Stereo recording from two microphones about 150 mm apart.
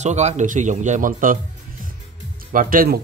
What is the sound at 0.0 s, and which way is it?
Speech, 50° right (ahead or behind).